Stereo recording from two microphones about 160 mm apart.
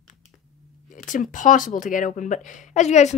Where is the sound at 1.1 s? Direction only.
55° left (ahead or behind).